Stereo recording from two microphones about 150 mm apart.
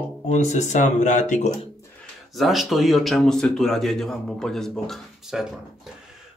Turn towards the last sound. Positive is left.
turn(degrees=0)  # may be behind; listen again after turning